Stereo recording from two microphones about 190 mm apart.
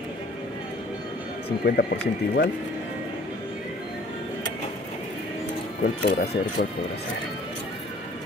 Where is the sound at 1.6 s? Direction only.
60° left (ahead or behind).